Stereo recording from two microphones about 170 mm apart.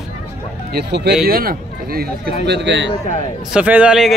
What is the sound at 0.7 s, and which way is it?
Speech, 80° right.